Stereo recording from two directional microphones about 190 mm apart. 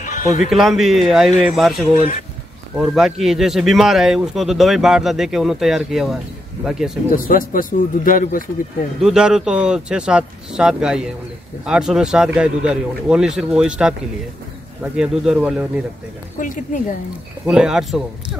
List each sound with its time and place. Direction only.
0.0 s music: 40° left (ahead or behind)
0.5 s speech: centre (ahead or behind)
7.1 s speech: 45° left (ahead or behind)
9.0 s speech: 5° right (ahead or behind)
15.0 s speech: 5° right (ahead or behind)
16.3 s speech: 45° left (ahead or behind)
17.5 s speech: 5° right (ahead or behind)